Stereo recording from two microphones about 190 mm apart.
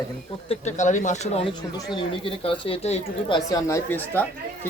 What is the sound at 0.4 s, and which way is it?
Speech, 35° left (ahead or behind).